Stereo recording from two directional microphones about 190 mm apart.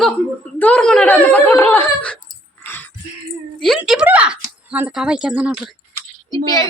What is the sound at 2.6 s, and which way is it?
Music, 10° left (ahead or behind).